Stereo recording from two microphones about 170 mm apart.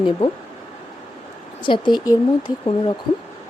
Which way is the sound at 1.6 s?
25° left (ahead or behind).